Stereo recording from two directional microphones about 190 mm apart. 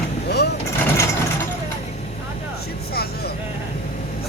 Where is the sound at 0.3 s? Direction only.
60° left (ahead or behind).